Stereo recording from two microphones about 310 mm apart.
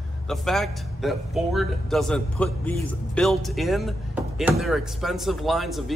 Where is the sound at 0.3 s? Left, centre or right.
Centre.